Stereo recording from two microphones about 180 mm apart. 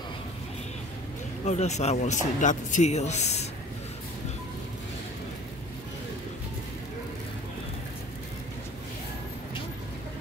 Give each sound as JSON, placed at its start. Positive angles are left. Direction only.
{"t": 1.4, "sound": "speech", "side_deg": 40}